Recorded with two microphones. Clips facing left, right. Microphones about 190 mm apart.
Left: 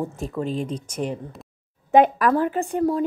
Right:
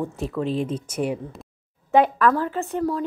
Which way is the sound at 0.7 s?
10° right (ahead or behind).